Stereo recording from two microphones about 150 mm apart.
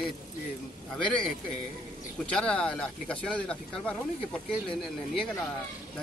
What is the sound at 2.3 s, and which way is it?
Speech, 5° left (ahead or behind).